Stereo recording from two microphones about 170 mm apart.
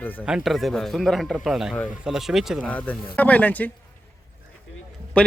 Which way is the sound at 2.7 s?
10° left (ahead or behind).